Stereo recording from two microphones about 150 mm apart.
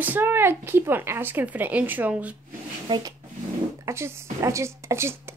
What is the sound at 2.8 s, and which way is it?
Speech, 30° right (ahead or behind).